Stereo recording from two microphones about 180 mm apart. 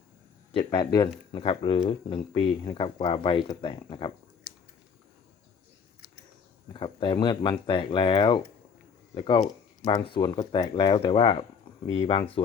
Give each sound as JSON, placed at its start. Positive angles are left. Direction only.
{"t": 0.6, "sound": "speech", "side_deg": 20}
{"t": 4.5, "sound": "a sound", "side_deg": 15}
{"t": 6.7, "sound": "speech", "side_deg": 30}